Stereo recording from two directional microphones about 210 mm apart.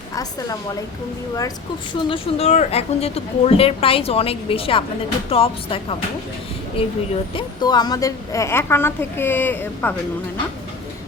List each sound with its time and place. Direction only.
2.0 s a woman's voice: 25° left (ahead or behind); by 9.9 s 10° left (ahead or behind)